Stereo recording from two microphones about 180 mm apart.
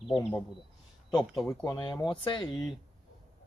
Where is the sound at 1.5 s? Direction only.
20° left (ahead or behind).